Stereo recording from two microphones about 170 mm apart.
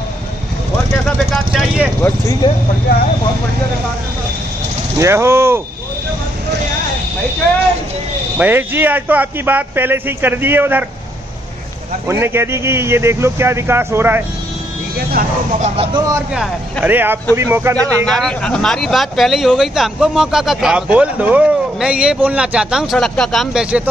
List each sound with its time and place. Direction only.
1.0 s speech: centre (ahead or behind)
2.4 s speech: 25° left (ahead or behind)
4.9 s a man's voice: 15° right (ahead or behind)
8.4 s a man's voice: 10° right (ahead or behind)
12.1 s a man's voice: 15° right (ahead or behind)
15.6 s speech: 35° right (ahead or behind)
16.8 s a man's voice: 10° right (ahead or behind)
17.7 s speech: 5° left (ahead or behind)